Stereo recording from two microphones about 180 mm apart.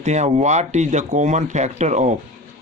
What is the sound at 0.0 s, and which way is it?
Speech, 40° right (ahead or behind).